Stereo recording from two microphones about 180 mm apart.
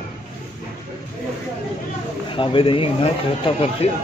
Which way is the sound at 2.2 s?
30° left (ahead or behind).